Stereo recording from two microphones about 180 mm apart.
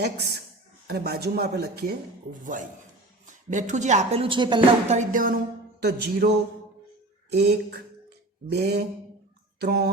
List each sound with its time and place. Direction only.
0.9 s speech: 60° right (ahead or behind)
2.4 s music: 45° right (ahead or behind)
3.2 s a woman's voice: 45° right (ahead or behind); by 4.9 s 25° right (ahead or behind)
4.9 s music: 50° right (ahead or behind)
5.8 s speech: 65° right (ahead or behind)
7.3 s a sound: 60° right (ahead or behind)
8.4 s speech: 65° right (ahead or behind)